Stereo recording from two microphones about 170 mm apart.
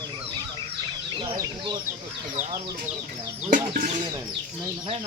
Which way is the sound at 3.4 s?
55° right (ahead or behind).